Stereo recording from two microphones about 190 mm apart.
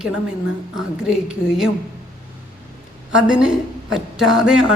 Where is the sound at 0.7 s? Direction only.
5° right (ahead or behind).